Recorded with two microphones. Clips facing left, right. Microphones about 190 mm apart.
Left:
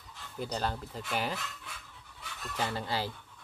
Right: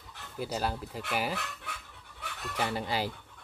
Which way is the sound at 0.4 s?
5° right (ahead or behind).